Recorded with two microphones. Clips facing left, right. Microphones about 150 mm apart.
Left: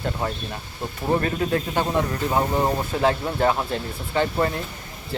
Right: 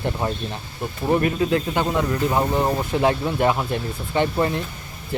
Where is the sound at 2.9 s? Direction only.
20° right (ahead or behind).